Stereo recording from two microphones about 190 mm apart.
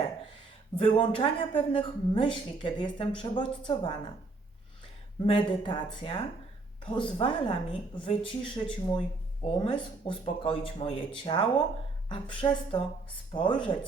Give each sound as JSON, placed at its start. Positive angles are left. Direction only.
{"t": 0.8, "sound": "a woman's voice", "side_deg": 30}
{"t": 5.2, "sound": "a woman's voice", "side_deg": 25}